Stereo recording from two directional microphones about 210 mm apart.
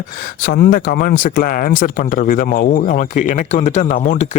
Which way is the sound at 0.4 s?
45° left (ahead or behind).